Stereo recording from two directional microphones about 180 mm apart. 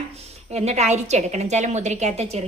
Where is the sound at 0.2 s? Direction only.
35° right (ahead or behind).